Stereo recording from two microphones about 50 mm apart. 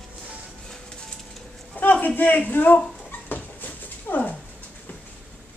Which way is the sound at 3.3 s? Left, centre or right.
Left.